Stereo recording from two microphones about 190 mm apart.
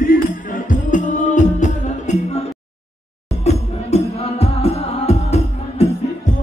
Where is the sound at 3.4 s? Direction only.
35° left (ahead or behind).